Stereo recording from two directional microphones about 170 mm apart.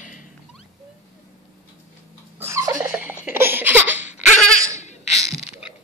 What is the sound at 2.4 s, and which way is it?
Laughter, 15° right (ahead or behind).